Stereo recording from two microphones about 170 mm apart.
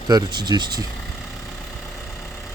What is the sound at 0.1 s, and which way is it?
Speech, 25° right (ahead or behind).